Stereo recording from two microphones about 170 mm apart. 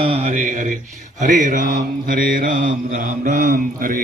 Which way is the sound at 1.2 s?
50° right (ahead or behind).